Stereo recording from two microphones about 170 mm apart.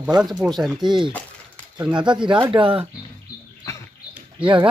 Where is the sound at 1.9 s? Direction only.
25° right (ahead or behind).